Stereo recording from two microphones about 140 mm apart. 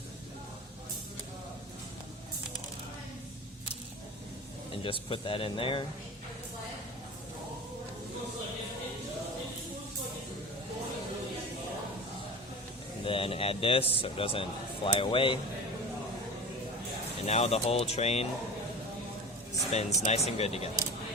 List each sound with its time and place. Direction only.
4.7 s speech: 40° left (ahead or behind)
13.1 s speech: 40° left (ahead or behind)
17.2 s speech: 50° left (ahead or behind)
19.7 s speech: 50° left (ahead or behind)